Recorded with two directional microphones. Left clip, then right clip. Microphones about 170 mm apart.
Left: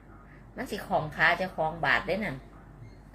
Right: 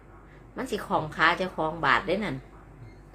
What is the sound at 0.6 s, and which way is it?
A woman's voice, 25° right (ahead or behind).